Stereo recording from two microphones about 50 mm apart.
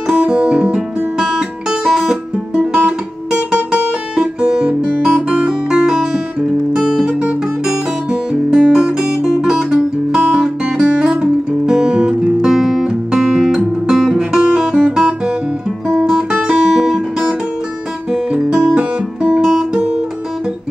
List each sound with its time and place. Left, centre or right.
0.1 s music: right
1.2 s guitar: centre
4.8 s guitar: right
5.7 s music: centre
7.6 s guitar: centre
18.1 s guitar: centre